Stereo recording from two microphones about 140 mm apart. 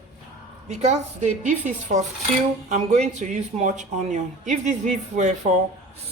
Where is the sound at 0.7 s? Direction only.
55° right (ahead or behind).